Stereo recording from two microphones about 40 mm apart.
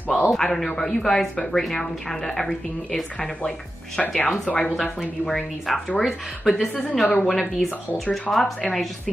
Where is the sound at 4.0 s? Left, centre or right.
Left.